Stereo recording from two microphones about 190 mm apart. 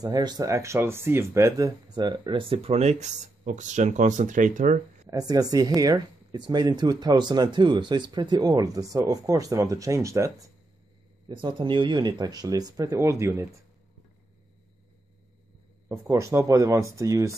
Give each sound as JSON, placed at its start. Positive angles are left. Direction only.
{"t": 0.0, "sound": "speech", "side_deg": -20}
{"t": 5.0, "sound": "speech", "side_deg": -20}
{"t": 15.9, "sound": "speech", "side_deg": -15}